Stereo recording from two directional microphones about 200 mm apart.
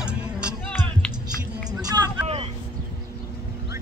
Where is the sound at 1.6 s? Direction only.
20° right (ahead or behind).